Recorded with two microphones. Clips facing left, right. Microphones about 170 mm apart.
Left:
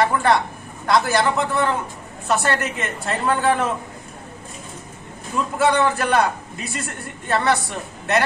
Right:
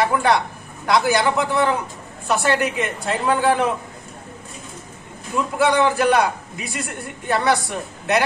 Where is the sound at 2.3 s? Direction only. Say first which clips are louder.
Right 1 dB; 15° right (ahead or behind).